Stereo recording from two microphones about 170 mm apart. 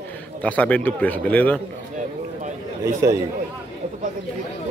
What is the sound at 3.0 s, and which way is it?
Speech, 15° right (ahead or behind).